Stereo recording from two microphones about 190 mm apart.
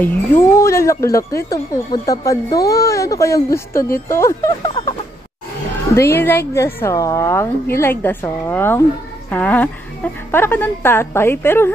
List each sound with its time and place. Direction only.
0.0 s speech: 10° left (ahead or behind)
5.9 s speech: 15° left (ahead or behind)